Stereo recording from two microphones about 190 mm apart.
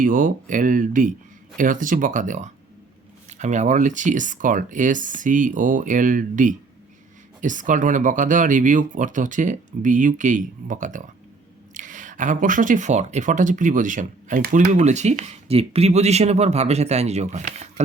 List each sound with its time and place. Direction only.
0.0 s speech: 45° right (ahead or behind)